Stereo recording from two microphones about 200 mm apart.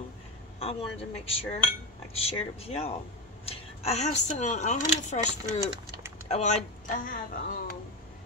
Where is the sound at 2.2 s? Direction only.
30° left (ahead or behind).